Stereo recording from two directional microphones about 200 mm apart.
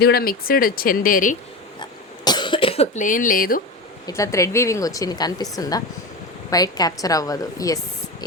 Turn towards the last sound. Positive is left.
turn(degrees=15)  # may be behind; listen again after turning